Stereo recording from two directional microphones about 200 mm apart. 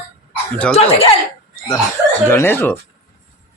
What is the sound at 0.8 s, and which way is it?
Speech, 30° left (ahead or behind).